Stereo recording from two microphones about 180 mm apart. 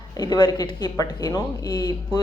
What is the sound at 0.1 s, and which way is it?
Speech, 25° left (ahead or behind).